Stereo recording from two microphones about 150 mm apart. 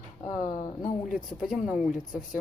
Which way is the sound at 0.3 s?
55° left (ahead or behind).